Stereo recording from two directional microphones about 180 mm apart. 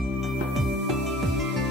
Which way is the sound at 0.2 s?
Centre (ahead or behind).